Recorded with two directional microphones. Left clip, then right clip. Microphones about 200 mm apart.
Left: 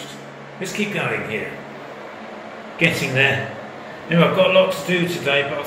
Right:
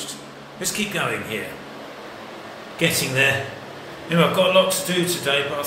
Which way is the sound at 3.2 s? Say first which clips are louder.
Left 2 dB; 15° right (ahead or behind).